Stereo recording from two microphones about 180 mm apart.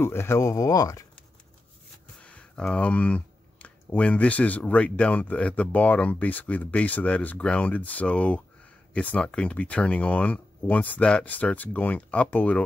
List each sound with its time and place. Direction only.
0.0 s speech: 15° left (ahead or behind)
2.2 s speech: 5° left (ahead or behind)